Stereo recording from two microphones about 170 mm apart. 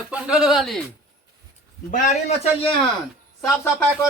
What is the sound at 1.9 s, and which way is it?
Speech, 50° left (ahead or behind).